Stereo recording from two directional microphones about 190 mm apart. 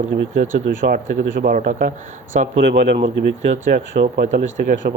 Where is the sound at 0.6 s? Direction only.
50° right (ahead or behind).